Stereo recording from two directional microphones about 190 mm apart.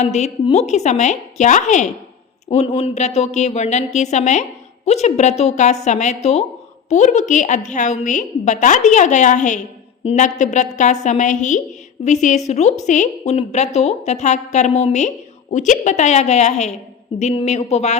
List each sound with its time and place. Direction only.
0.0 s a woman's voice: 35° left (ahead or behind)